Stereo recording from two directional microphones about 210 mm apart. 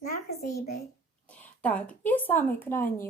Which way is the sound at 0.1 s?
40° left (ahead or behind).